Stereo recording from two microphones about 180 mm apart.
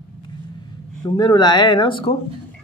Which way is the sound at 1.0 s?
25° left (ahead or behind).